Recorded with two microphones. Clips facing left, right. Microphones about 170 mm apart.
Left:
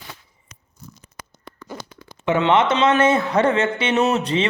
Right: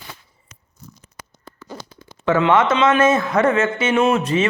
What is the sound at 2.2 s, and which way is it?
A man's voice, 25° left (ahead or behind).